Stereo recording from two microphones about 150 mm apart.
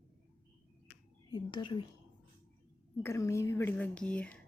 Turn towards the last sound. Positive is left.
turn(degrees=10)  # may be behind; listen again after turning